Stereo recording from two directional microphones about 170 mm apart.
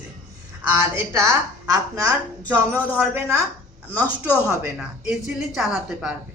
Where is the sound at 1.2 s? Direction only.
20° right (ahead or behind).